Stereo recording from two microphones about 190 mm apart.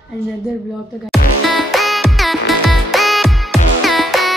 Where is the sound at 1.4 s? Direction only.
Centre (ahead or behind).